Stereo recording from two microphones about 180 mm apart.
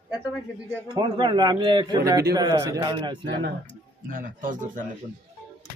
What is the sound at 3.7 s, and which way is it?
Speech, 50° right (ahead or behind).